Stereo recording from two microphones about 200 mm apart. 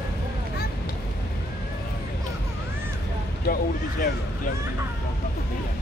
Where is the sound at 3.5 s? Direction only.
50° left (ahead or behind).